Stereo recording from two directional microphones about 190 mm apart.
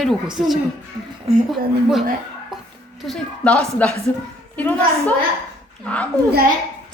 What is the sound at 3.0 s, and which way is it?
A woman's voice, 5° left (ahead or behind).